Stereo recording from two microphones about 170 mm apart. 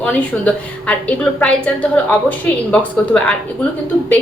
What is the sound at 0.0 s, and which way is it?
A woman's voice, 10° left (ahead or behind).